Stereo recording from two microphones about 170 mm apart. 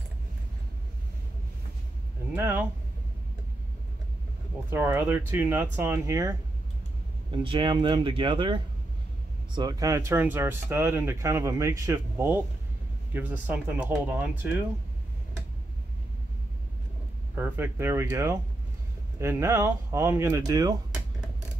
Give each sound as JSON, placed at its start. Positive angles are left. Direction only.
{"t": 2.3, "sound": "speech", "side_deg": -10}
{"t": 4.6, "sound": "speech", "side_deg": -10}
{"t": 7.2, "sound": "speech", "side_deg": -30}
{"t": 9.6, "sound": "speech", "side_deg": -20}
{"t": 17.4, "sound": "speech", "side_deg": -10}